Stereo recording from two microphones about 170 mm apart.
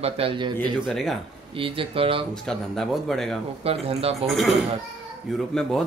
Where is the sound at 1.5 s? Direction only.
30° right (ahead or behind).